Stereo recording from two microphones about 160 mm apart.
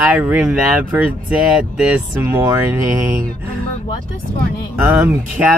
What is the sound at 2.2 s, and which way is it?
Speech, 20° right (ahead or behind).